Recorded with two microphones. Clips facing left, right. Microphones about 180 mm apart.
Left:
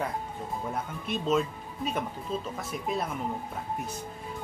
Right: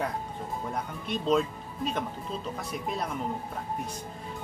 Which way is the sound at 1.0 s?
5° left (ahead or behind).